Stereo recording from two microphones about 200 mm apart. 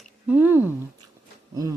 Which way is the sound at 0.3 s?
10° right (ahead or behind).